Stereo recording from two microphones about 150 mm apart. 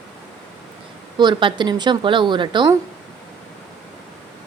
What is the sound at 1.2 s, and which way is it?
A woman's voice, 30° right (ahead or behind).